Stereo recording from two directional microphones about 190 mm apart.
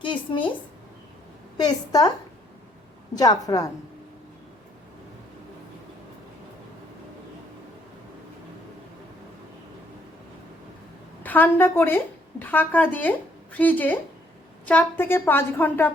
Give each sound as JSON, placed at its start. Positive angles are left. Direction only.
{"t": 0.0, "sound": "a sound", "side_deg": 25}
{"t": 1.5, "sound": "a woman's voice", "side_deg": 20}
{"t": 3.2, "sound": "a woman's voice", "side_deg": 20}
{"t": 11.2, "sound": "a woman's voice", "side_deg": 10}